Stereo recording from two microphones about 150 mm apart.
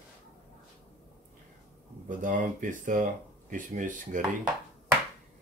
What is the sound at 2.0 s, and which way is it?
Speech, 60° right (ahead or behind).